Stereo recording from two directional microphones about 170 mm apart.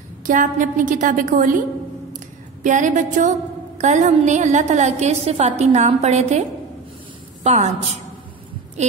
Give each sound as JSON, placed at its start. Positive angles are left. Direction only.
{"t": 0.3, "sound": "a woman's voice", "side_deg": -50}
{"t": 2.6, "sound": "a woman's voice", "side_deg": -45}
{"t": 7.4, "sound": "a woman's voice", "side_deg": -45}